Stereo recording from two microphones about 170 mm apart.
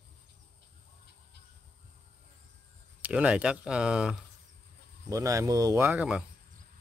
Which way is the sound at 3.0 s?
5° right (ahead or behind).